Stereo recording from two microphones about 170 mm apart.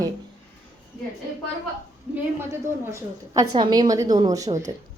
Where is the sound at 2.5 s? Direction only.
15° right (ahead or behind).